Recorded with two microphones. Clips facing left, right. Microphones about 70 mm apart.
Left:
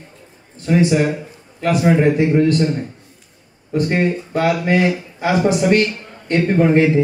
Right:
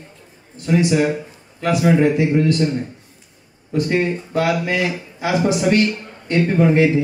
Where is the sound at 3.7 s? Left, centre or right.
Left.